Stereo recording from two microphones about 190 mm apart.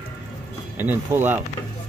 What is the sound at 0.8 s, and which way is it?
Speech, 10° right (ahead or behind).